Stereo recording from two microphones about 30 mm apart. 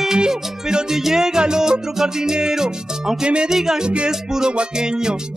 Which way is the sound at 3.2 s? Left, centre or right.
Right.